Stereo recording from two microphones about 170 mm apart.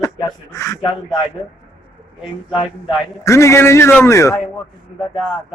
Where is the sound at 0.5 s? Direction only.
20° left (ahead or behind).